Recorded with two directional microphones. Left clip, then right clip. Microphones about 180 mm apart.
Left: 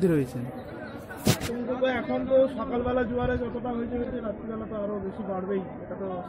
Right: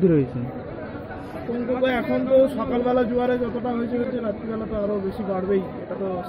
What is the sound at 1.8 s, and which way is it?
A man's voice, 5° left (ahead or behind).